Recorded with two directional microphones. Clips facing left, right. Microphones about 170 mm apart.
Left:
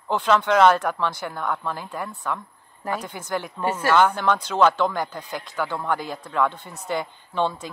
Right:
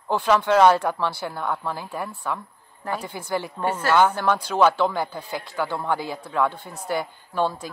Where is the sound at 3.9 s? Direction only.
10° right (ahead or behind).